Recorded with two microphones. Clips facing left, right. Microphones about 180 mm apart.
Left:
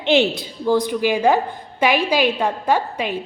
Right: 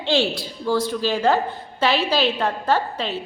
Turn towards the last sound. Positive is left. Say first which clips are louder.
# left 2 dB
turn(degrees=15)  # may be behind; listen again after turning